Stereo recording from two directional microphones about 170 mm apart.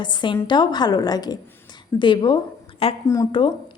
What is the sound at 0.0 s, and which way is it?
A woman's voice, 25° left (ahead or behind).